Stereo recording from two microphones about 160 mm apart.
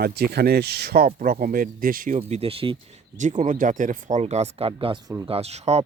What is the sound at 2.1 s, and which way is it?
Speech, 40° right (ahead or behind).